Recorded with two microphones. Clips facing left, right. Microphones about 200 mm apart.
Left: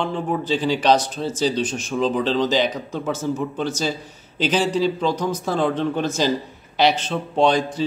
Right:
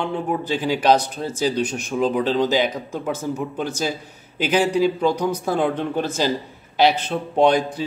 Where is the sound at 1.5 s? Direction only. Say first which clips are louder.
Right 1 dB; 60° right (ahead or behind).